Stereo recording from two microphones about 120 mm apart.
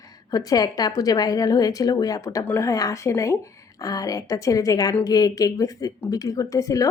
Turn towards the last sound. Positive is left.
turn(degrees=30)  # may be behind; listen again after turning